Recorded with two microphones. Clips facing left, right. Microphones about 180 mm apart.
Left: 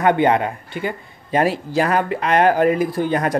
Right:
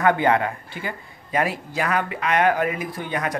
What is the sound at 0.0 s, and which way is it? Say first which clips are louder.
A man's voice: left 3 dB; 20° left (ahead or behind).